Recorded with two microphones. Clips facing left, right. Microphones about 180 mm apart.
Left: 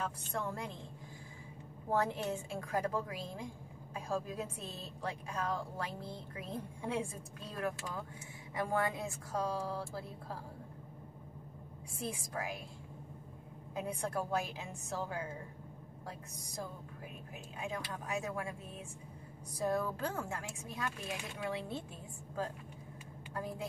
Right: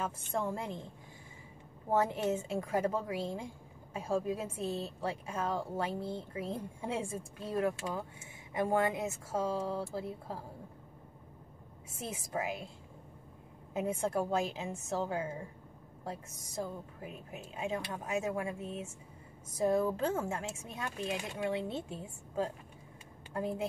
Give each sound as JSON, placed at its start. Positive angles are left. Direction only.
{"t": 0.3, "sound": "a woman's voice", "side_deg": -25}
{"t": 1.9, "sound": "a woman's voice", "side_deg": -20}
{"t": 12.0, "sound": "a woman's voice", "side_deg": -20}
{"t": 13.7, "sound": "a woman's voice", "side_deg": -25}